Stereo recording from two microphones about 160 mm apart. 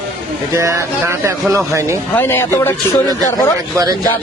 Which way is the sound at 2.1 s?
15° left (ahead or behind).